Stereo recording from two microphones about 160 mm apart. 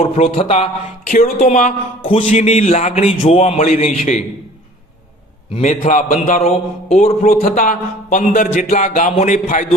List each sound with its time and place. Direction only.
0.0 s a man's voice: 35° left (ahead or behind)
2.0 s speech: 35° left (ahead or behind); by 4.2 s 50° left (ahead or behind)
5.5 s speech: 45° left (ahead or behind)